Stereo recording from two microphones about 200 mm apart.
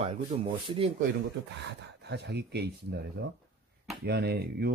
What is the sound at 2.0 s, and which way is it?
Speech, 60° right (ahead or behind).